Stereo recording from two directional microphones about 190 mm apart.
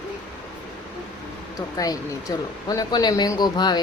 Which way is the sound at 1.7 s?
20° left (ahead or behind).